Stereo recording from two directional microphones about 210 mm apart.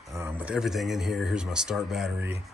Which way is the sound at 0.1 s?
10° right (ahead or behind).